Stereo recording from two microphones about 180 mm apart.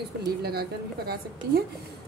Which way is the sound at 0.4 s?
60° right (ahead or behind).